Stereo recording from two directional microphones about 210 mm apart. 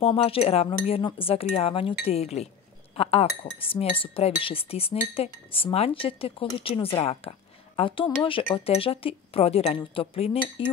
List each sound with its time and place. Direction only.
0.0 s speech: 25° left (ahead or behind)